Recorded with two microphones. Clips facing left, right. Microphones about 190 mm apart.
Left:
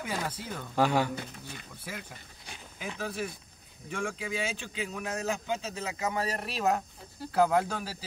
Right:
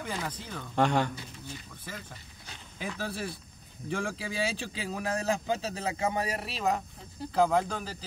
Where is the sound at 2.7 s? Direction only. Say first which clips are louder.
Even; 35° right (ahead or behind).